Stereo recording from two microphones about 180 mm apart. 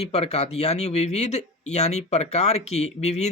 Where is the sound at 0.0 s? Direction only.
35° left (ahead or behind).